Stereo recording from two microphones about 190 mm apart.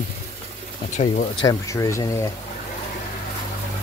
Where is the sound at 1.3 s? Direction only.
20° left (ahead or behind).